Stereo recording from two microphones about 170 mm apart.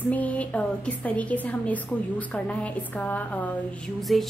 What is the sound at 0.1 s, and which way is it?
A woman's voice, 10° left (ahead or behind).